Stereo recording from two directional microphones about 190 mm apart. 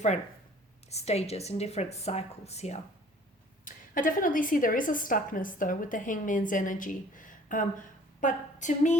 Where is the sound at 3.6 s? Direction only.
45° left (ahead or behind).